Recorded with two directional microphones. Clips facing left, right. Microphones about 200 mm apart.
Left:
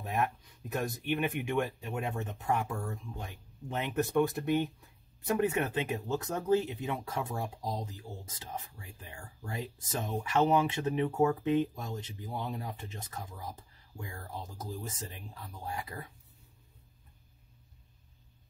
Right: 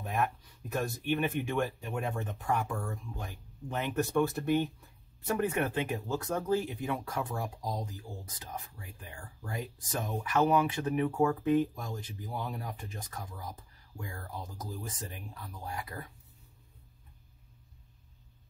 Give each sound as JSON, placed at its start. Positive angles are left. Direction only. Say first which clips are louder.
{"t": 0.0, "sound": "speech", "louder": "even", "side_deg": 25}